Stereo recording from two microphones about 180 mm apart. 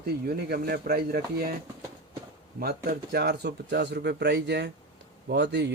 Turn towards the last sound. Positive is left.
turn(degrees=-75)  # may be behind; listen again after turning